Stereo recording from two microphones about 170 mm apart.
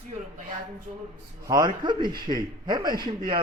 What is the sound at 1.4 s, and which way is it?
A man's voice, 25° right (ahead or behind).